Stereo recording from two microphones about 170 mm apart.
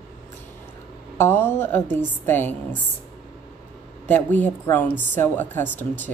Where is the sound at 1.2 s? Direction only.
15° left (ahead or behind).